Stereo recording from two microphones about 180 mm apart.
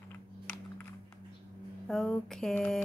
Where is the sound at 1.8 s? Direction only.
5° left (ahead or behind).